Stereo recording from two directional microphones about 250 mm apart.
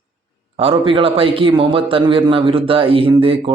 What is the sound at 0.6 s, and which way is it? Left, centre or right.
A man's voice, right.